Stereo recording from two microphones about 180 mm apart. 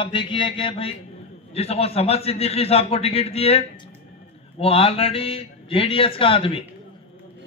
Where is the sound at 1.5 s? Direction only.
35° left (ahead or behind).